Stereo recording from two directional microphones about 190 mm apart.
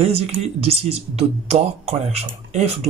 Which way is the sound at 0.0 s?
30° right (ahead or behind).